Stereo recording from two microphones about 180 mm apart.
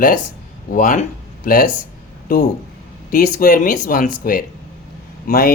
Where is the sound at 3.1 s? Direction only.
55° left (ahead or behind).